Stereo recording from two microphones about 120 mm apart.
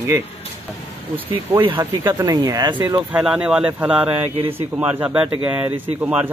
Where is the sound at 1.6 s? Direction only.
45° right (ahead or behind).